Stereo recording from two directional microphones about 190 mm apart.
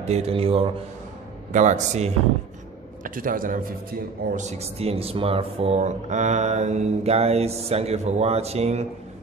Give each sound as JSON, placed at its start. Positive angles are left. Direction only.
{"t": 0.0, "sound": "a man's voice", "side_deg": -30}
{"t": 4.4, "sound": "speech", "side_deg": -35}